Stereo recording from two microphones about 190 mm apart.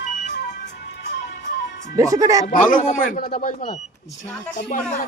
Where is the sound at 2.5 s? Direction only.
45° left (ahead or behind).